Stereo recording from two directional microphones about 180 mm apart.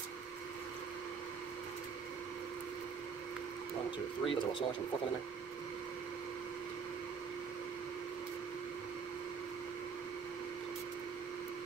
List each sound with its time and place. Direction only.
4.2 s speech: 30° left (ahead or behind)